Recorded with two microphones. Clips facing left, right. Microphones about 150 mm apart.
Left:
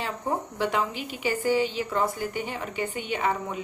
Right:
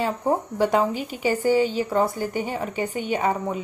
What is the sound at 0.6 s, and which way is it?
A woman's voice, 40° right (ahead or behind).